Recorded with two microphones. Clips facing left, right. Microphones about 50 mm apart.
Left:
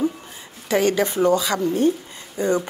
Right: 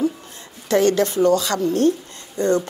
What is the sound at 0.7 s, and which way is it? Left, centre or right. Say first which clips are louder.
A woman's voice: right 2 dB; centre.